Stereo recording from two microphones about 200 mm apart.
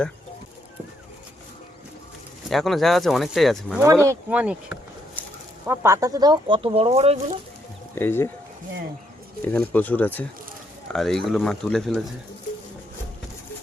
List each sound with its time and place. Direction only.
2.5 s speech: centre (ahead or behind)
3.8 s speech: 15° right (ahead or behind); by 7.2 s 30° right (ahead or behind)
7.9 s speech: 10° left (ahead or behind)
9.5 s speech: 10° left (ahead or behind)